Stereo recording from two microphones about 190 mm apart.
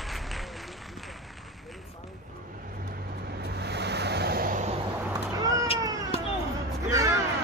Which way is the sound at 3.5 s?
60° right (ahead or behind).